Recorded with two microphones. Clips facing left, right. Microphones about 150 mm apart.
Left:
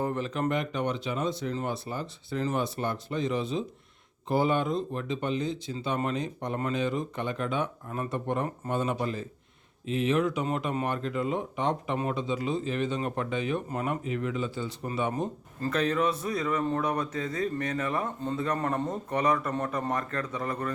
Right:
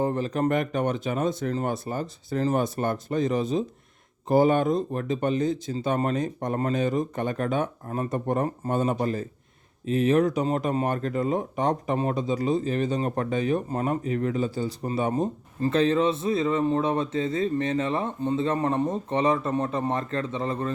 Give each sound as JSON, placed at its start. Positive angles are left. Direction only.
{"t": 0.0, "sound": "a man's voice", "side_deg": -35}